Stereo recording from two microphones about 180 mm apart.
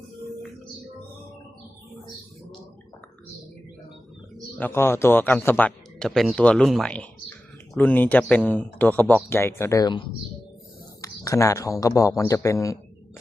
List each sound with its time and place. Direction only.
4.5 s speech: 10° left (ahead or behind)